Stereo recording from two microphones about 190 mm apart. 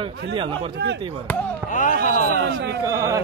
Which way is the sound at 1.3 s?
10° left (ahead or behind).